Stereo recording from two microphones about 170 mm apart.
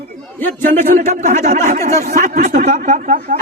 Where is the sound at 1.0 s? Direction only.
45° right (ahead or behind).